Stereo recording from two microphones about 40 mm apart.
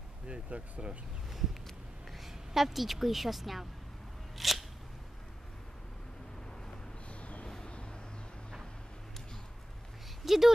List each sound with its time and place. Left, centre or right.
0.3 s speech: right
2.1 s a woman's voice: centre
4.4 s scissors: centre
7.1 s a sound: left
7.4 s vehicle: centre
10.2 s speech: centre